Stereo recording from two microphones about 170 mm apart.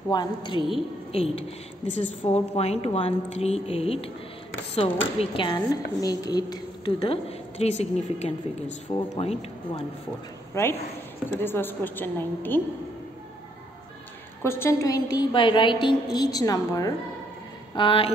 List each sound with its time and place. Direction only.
0.1 s a woman's voice: 25° left (ahead or behind)
10.5 s a woman's voice: 15° left (ahead or behind)
14.4 s a woman's voice: 15° left (ahead or behind); by 18.1 s 30° left (ahead or behind)